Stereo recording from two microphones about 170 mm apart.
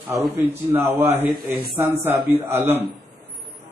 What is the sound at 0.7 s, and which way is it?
Mantra, 15° right (ahead or behind).